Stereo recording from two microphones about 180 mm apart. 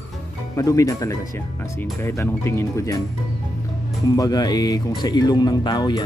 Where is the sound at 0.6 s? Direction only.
20° left (ahead or behind).